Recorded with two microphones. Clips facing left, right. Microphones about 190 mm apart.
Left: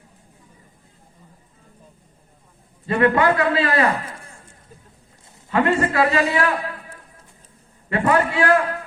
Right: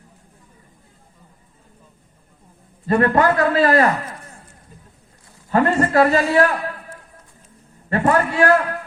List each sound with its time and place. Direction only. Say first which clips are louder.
2.8 s a man's voice: right 1 dB; 40° right (ahead or behind)
5.5 s a man's voice: right 2 dB; 45° right (ahead or behind)
7.9 s a man's voice: right 1 dB; 40° right (ahead or behind)